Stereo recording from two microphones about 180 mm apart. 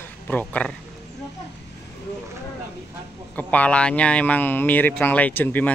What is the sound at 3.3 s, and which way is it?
Speech, 10° left (ahead or behind).